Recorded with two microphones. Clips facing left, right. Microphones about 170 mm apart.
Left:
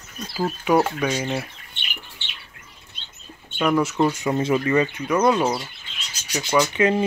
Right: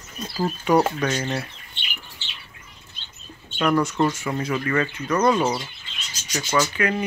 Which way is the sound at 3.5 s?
5° left (ahead or behind).